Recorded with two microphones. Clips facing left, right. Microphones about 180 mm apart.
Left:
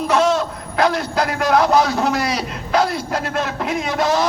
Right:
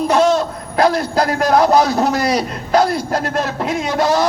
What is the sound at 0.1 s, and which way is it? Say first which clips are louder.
A man's voice: right 1 dB; 35° right (ahead or behind).